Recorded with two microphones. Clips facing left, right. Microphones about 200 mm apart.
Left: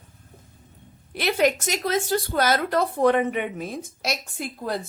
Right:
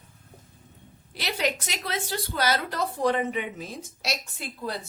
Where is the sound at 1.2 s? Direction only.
50° left (ahead or behind).